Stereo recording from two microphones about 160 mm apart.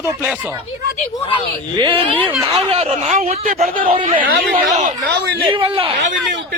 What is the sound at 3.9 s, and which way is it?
Speech, 35° right (ahead or behind).